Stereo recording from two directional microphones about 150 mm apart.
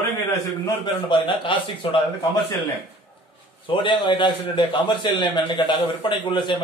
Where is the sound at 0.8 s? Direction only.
35° left (ahead or behind).